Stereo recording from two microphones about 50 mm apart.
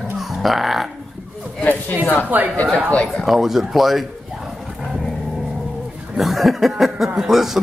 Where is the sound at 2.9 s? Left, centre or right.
Left.